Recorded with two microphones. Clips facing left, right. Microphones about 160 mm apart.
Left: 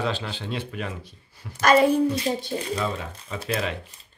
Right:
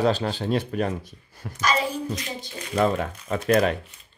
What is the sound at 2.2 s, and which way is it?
Speech, 30° left (ahead or behind).